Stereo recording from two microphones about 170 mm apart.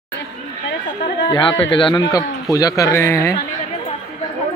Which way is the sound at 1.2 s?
30° left (ahead or behind).